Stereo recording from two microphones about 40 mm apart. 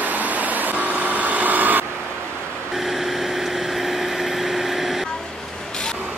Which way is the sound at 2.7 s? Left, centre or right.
Centre.